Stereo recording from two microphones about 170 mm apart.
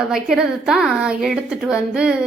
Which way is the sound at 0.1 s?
5° right (ahead or behind).